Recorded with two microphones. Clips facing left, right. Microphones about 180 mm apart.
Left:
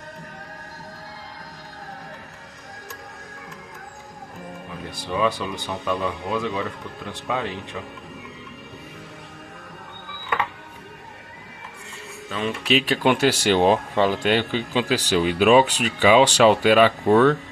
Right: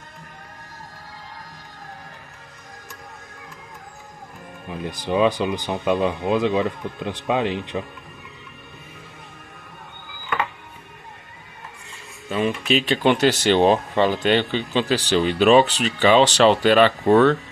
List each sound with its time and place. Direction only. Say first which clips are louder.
4.9 s speech: right 4 dB; 20° right (ahead or behind)
12.4 s speech: even; centre (ahead or behind)